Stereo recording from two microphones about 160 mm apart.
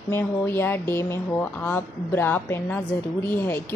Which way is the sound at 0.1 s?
15° left (ahead or behind).